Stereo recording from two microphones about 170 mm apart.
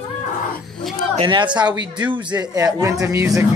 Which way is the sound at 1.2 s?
30° right (ahead or behind).